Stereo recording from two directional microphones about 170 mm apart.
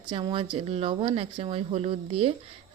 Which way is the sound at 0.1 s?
30° right (ahead or behind).